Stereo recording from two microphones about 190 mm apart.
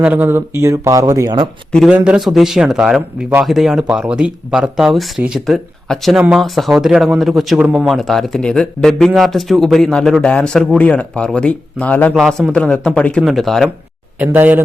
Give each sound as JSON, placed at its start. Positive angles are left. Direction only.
{"t": 0.0, "sound": "speech", "side_deg": -10}
{"t": 1.7, "sound": "speech", "side_deg": -5}
{"t": 14.2, "sound": "speech", "side_deg": -10}